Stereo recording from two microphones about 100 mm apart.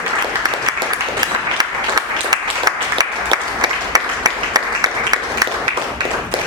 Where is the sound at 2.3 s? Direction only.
40° right (ahead or behind).